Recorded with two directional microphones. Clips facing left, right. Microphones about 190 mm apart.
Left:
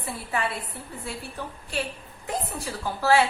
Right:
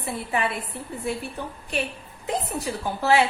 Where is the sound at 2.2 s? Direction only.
20° right (ahead or behind).